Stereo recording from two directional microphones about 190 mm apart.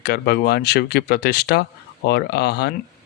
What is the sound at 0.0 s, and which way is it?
Speech, 55° left (ahead or behind).